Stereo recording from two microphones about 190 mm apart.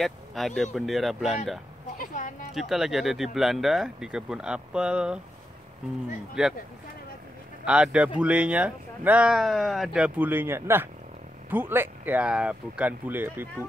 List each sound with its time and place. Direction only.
0.0 s speech: centre (ahead or behind)
2.0 s a sound: 45° left (ahead or behind)
2.5 s speech: centre (ahead or behind)
6.4 s speech: centre (ahead or behind)
7.6 s speech: 5° right (ahead or behind)